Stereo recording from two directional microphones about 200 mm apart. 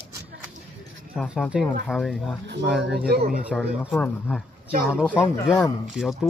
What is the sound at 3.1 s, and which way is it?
Speech, 50° right (ahead or behind).